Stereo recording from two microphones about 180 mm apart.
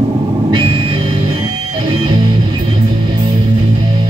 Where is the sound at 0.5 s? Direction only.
30° right (ahead or behind).